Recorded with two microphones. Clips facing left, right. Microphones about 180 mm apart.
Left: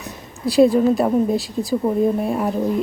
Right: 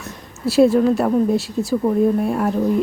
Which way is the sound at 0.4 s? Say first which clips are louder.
Even; 5° right (ahead or behind).